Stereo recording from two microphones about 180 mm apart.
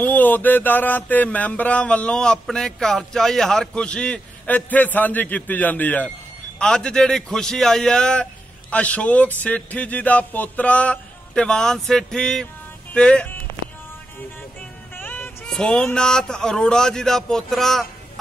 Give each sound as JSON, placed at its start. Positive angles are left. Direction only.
{"t": 0.0, "sound": "a sound", "side_deg": 10}
{"t": 6.6, "sound": "a man's voice", "side_deg": 5}
{"t": 15.0, "sound": "speech", "side_deg": 10}